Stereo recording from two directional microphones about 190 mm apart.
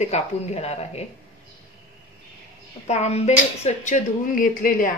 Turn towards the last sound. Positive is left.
turn(degrees=45)  # may be behind; listen again after turning